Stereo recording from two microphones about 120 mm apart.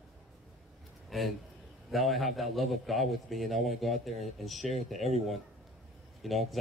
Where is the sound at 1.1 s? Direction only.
Centre (ahead or behind).